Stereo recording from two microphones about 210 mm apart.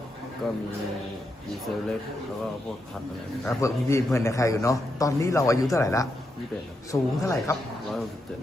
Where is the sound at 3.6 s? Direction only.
15° left (ahead or behind).